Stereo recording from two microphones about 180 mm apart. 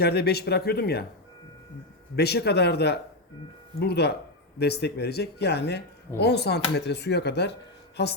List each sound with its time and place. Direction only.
0.0 s speech: 60° left (ahead or behind)
2.1 s speech: 65° left (ahead or behind)